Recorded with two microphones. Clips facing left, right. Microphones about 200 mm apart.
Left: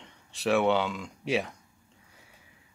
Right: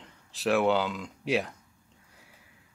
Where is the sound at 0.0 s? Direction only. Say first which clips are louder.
Even; centre (ahead or behind).